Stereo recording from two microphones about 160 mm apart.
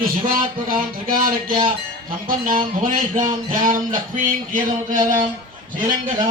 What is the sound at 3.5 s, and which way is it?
A man's voice, 60° right (ahead or behind).